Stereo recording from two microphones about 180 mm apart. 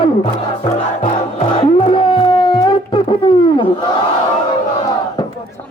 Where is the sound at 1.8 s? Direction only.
30° left (ahead or behind).